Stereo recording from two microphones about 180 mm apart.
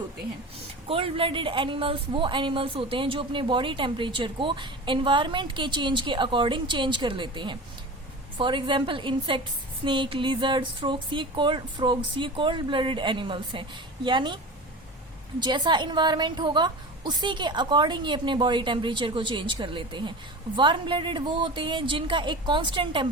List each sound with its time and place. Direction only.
0.9 s speech: 30° right (ahead or behind)
15.4 s speech: 25° right (ahead or behind)